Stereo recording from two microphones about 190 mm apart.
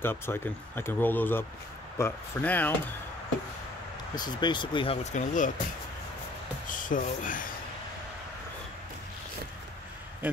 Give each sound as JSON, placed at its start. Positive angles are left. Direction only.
{"t": 0.0, "sound": "speech", "side_deg": 10}
{"t": 4.1, "sound": "speech", "side_deg": 20}
{"t": 6.7, "sound": "speech", "side_deg": 45}